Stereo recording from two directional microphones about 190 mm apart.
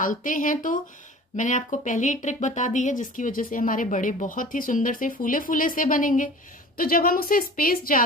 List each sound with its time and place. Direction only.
0.0 s speech: 45° left (ahead or behind)